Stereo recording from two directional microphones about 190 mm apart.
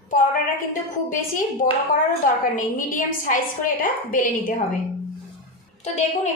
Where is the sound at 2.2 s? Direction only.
45° left (ahead or behind).